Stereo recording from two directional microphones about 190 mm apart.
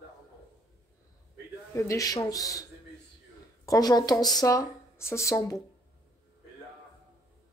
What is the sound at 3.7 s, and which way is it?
Speech, 20° left (ahead or behind).